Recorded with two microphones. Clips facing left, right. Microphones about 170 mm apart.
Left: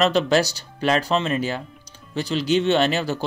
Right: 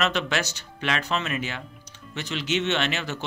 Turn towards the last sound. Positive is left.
turn(degrees=35)  # may be behind; listen again after turning